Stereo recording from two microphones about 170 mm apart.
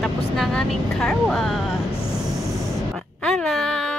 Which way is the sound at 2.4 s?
20° left (ahead or behind).